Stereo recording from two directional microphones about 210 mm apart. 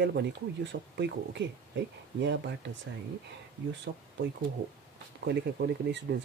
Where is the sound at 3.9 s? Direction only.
45° right (ahead or behind).